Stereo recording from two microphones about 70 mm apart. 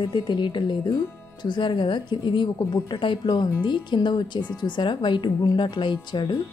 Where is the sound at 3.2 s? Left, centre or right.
Left.